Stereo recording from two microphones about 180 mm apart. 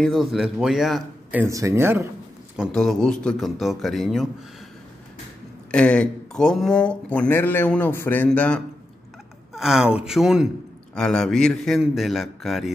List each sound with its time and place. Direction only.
0.0 s a man's voice: centre (ahead or behind)
1.4 s speech: 15° right (ahead or behind)
2.5 s a man's voice: centre (ahead or behind)
5.7 s a man's voice: 5° left (ahead or behind)